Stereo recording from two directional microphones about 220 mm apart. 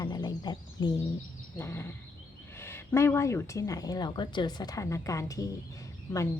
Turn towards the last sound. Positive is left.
turn(degrees=10)  # may be behind; listen again after turning